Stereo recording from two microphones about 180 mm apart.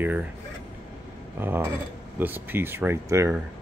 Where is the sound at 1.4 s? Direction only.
10° right (ahead or behind).